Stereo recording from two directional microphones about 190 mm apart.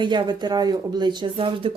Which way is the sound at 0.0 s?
25° right (ahead or behind).